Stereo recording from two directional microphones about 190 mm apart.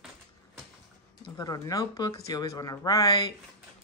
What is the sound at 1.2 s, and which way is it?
Speech, 20° left (ahead or behind).